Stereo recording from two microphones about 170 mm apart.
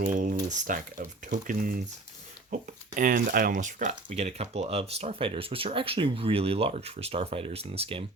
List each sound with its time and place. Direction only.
0.0 s speech: 50° right (ahead or behind); by 8.0 s 35° right (ahead or behind)